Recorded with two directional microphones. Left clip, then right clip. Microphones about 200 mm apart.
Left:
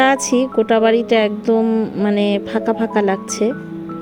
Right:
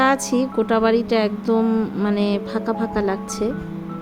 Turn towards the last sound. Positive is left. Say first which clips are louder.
# left 5 dB
turn(degrees=20)  # may be behind; listen again after turning